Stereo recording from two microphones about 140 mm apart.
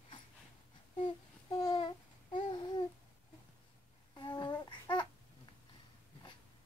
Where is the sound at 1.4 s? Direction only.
30° left (ahead or behind).